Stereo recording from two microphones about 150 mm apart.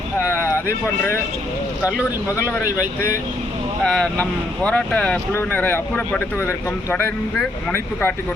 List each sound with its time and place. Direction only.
0.2 s a sound: 20° left (ahead or behind)
1.8 s speech: 10° right (ahead or behind)
2.7 s speech: 20° left (ahead or behind)
3.8 s speech: 10° left (ahead or behind)